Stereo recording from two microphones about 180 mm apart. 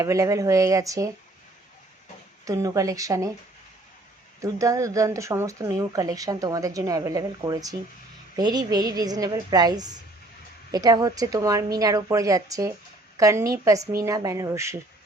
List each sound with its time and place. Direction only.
0.0 s speech: 15° right (ahead or behind)
2.4 s speech: 20° right (ahead or behind)
4.4 s speech: 15° right (ahead or behind)